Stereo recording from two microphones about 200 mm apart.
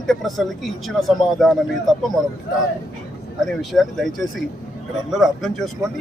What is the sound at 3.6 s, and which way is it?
Speech, centre (ahead or behind).